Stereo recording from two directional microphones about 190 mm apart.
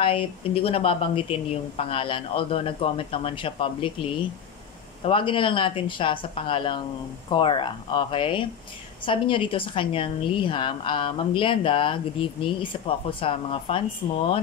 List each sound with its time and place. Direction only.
0.0 s a woman's voice: 30° left (ahead or behind)
5.0 s a woman's voice: 25° left (ahead or behind)